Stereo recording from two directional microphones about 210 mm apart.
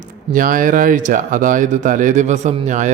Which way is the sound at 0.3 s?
40° right (ahead or behind).